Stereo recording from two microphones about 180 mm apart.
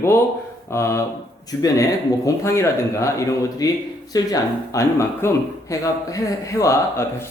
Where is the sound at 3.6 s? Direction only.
20° left (ahead or behind).